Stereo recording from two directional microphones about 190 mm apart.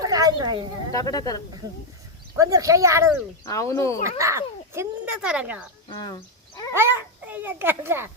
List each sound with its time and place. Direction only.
0.0 s a sound: 20° right (ahead or behind)
0.9 s speech: 20° left (ahead or behind)
2.3 s speech: 15° right (ahead or behind)
3.4 s speech: 15° left (ahead or behind)
4.2 s speech: 15° right (ahead or behind)
5.9 s a sound: 25° left (ahead or behind)
6.7 s a child's voice: 10° right (ahead or behind)